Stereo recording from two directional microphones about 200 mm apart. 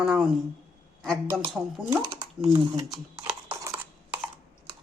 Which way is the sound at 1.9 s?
15° right (ahead or behind).